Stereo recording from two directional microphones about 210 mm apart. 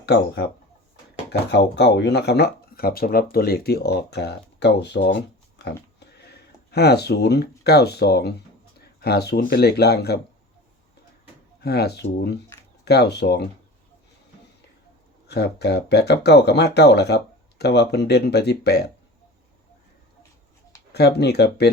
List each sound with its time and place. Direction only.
0.0 s speech: 50° left (ahead or behind)
5.6 s pig: 55° left (ahead or behind)
6.2 s speech: 50° left (ahead or behind)
11.6 s speech: 50° left (ahead or behind)
15.3 s speech: 50° left (ahead or behind)
20.9 s speech: 50° left (ahead or behind)